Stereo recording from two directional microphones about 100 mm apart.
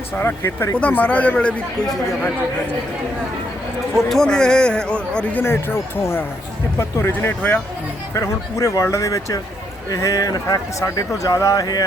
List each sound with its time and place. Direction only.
0.2 s a man's voice: 25° left (ahead or behind)
3.9 s a man's voice: 5° left (ahead or behind)
5.4 s speech: 25° left (ahead or behind); by 11.8 s 40° left (ahead or behind)